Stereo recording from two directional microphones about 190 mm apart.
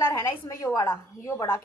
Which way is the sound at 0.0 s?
15° left (ahead or behind).